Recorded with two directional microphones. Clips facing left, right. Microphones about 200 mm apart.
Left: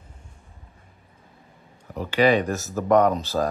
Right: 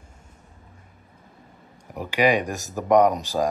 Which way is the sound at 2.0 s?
15° right (ahead or behind).